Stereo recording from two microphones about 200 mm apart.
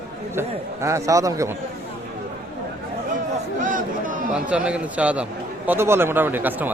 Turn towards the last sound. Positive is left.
turn(degrees=-10)  # may be behind; listen again after turning